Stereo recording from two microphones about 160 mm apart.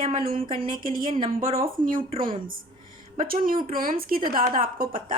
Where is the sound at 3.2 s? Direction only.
60° right (ahead or behind).